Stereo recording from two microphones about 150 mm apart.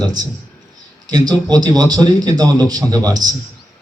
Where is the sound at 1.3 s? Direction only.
25° right (ahead or behind).